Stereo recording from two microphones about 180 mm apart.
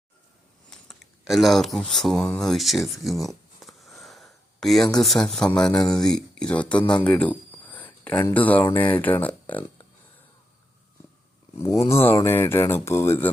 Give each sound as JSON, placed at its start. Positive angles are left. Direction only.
{"t": 0.7, "sound": "a sound", "side_deg": 0}
{"t": 4.9, "sound": "speech", "side_deg": 0}
{"t": 11.5, "sound": "speech", "side_deg": 15}